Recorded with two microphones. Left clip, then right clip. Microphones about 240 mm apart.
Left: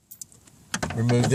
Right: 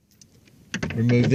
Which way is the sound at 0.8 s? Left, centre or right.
Centre.